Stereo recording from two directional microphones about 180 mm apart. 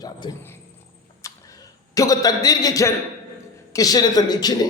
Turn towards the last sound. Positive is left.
turn(degrees=20)  # may be behind; listen again after turning